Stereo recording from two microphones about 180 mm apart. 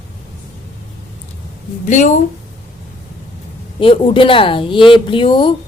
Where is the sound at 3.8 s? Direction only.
30° left (ahead or behind).